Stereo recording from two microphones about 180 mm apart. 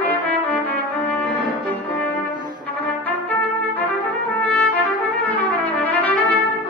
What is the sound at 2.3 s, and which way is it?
Brass instrument, 25° right (ahead or behind).